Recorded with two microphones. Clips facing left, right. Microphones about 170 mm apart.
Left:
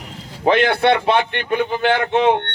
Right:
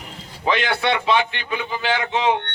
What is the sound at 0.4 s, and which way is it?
Speech, 55° left (ahead or behind).